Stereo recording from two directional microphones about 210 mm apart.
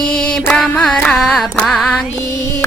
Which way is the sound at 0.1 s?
5° left (ahead or behind).